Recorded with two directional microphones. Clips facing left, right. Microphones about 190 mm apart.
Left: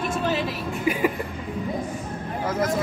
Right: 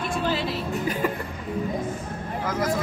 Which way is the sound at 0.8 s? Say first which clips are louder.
Left 5 dB; 10° left (ahead or behind).